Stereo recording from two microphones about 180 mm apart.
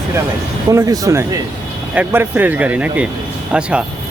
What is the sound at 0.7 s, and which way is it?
Speech, 20° right (ahead or behind).